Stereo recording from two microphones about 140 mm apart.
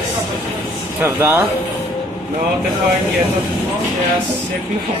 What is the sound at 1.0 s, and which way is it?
Speech, 15° right (ahead or behind).